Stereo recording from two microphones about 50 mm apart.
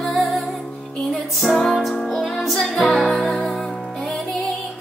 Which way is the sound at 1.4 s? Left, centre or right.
Centre.